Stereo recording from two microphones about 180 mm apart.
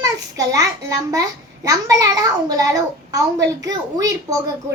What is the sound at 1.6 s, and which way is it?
A woman's voice, 20° right (ahead or behind).